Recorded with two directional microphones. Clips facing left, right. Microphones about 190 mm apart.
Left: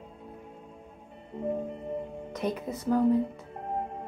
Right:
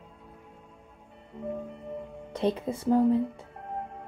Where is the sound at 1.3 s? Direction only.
25° left (ahead or behind).